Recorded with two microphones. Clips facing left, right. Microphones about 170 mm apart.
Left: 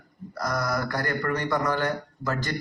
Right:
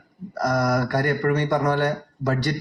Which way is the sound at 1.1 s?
70° right (ahead or behind).